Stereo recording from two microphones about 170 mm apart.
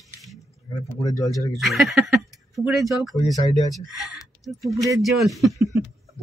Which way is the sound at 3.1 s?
20° left (ahead or behind).